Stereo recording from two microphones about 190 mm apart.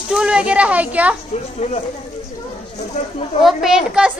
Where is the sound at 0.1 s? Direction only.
5° right (ahead or behind).